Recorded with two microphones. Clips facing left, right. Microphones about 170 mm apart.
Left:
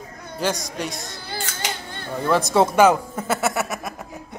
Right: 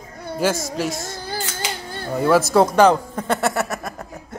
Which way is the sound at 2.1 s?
5° right (ahead or behind).